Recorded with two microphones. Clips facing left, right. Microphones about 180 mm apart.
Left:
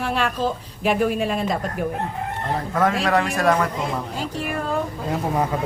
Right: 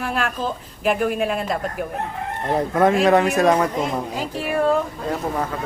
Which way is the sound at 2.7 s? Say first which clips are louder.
Right 4 dB; 20° right (ahead or behind).